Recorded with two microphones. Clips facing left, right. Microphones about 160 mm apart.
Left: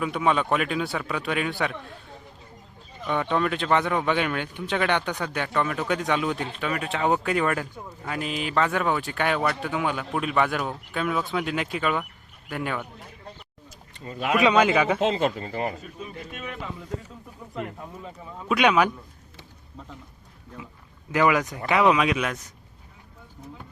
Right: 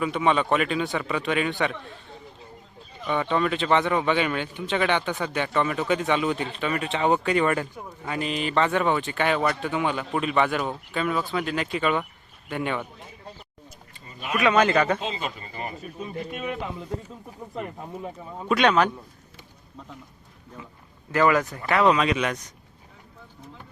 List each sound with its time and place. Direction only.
0.0 s speech: 5° left (ahead or behind)
3.1 s speech: centre (ahead or behind)
4.8 s speech: 10° right (ahead or behind)
13.9 s speech: 80° left
14.4 s a man's voice: 10° left (ahead or behind)
15.0 s speech: 80° left
15.4 s speech: 65° left (ahead or behind)
18.4 s a man's voice: 5° left (ahead or behind)
21.1 s a man's voice: 15° left (ahead or behind)